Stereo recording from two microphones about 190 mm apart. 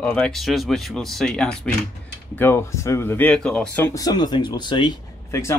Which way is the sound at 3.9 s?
20° left (ahead or behind).